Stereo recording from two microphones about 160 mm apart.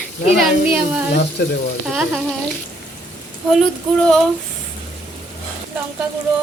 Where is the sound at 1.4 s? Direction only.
90° left.